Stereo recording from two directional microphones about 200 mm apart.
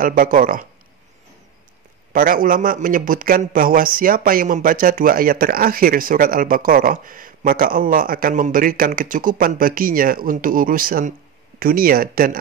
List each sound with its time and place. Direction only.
0.0 s speech: 45° right (ahead or behind)
2.1 s speech: 45° right (ahead or behind)